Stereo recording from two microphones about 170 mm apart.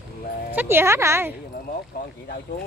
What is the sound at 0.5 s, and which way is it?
Speech, 15° right (ahead or behind).